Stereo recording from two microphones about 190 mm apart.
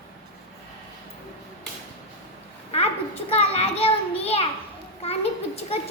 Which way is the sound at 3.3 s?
35° left (ahead or behind).